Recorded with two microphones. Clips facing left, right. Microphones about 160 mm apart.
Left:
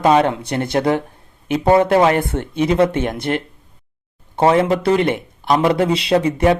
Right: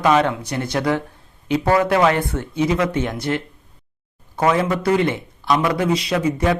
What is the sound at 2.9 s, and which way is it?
Speech, 55° left (ahead or behind).